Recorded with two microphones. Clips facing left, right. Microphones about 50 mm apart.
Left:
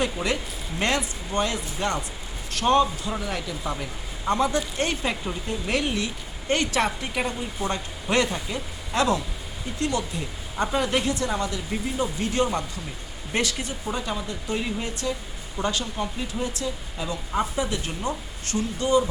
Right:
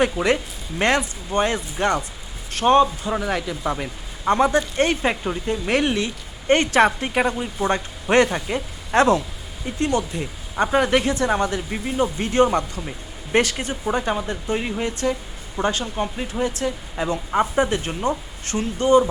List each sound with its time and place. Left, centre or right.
0.0 s speech: right
3.2 s speech: right
3.6 s speech: right
11.7 s speech: right